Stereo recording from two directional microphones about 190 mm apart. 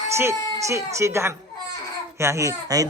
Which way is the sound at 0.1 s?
15° right (ahead or behind).